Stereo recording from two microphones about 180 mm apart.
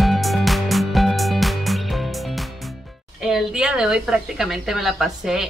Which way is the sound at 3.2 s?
5° right (ahead or behind).